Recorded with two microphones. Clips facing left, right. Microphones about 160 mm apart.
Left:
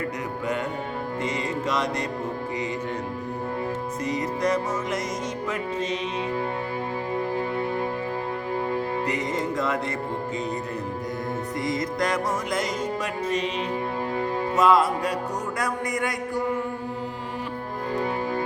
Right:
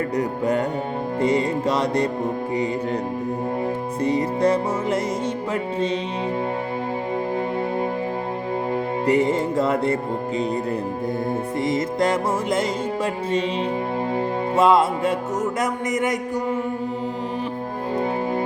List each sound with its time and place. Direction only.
0.2 s music: 35° right (ahead or behind)
4.0 s music: 30° right (ahead or behind)
8.7 s music: 30° right (ahead or behind)
11.6 s music: 25° right (ahead or behind)
14.2 s music: 30° right (ahead or behind)